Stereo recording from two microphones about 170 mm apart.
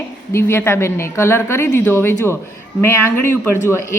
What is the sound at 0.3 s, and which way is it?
A woman's voice, 15° left (ahead or behind).